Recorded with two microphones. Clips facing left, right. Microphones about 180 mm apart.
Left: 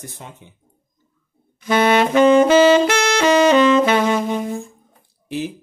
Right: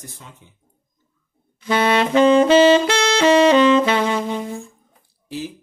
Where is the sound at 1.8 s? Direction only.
25° left (ahead or behind).